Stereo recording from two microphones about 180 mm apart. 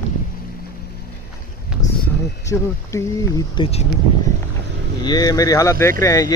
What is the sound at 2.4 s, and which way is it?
Speech, 15° left (ahead or behind).